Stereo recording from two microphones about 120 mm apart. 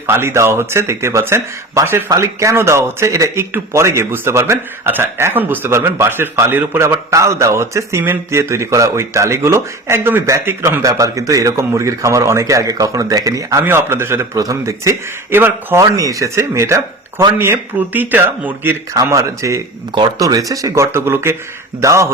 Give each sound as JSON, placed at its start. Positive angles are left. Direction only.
{"t": 0.1, "sound": "a man's voice", "side_deg": -20}